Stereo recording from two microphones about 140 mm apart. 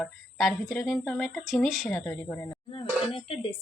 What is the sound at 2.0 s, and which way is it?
Speech, 10° left (ahead or behind).